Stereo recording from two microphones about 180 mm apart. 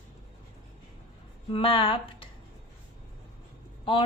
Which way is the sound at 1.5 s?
30° left (ahead or behind).